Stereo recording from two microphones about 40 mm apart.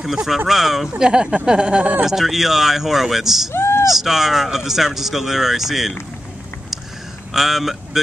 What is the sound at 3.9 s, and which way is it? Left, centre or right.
Speech, centre.